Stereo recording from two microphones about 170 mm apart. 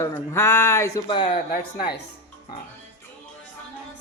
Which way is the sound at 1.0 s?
25° left (ahead or behind).